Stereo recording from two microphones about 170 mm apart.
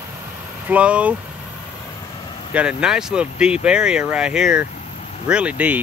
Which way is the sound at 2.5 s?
5° right (ahead or behind).